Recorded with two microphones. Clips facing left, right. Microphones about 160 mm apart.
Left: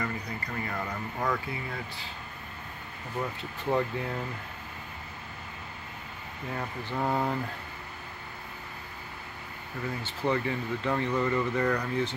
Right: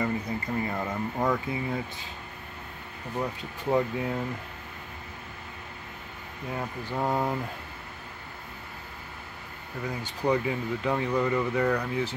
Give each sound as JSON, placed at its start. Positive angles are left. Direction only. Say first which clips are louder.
{"t": 0.0, "sound": "speech", "louder": "right 5 dB", "side_deg": -20}
{"t": 3.7, "sound": "speech", "louder": "right 3 dB", "side_deg": -10}
{"t": 6.5, "sound": "speech", "louder": "right 2 dB", "side_deg": -10}
{"t": 9.8, "sound": "speech", "louder": "right 3 dB", "side_deg": -15}